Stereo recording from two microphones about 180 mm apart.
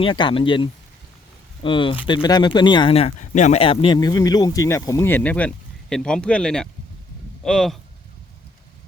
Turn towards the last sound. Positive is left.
turn(degrees=0)  # may be behind; listen again after turning